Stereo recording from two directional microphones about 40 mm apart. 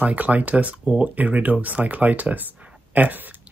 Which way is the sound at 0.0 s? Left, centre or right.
Right.